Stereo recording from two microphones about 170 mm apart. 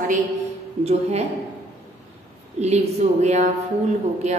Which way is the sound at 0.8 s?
40° right (ahead or behind).